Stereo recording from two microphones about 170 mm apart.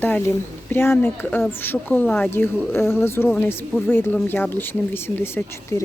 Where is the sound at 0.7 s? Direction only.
10° left (ahead or behind).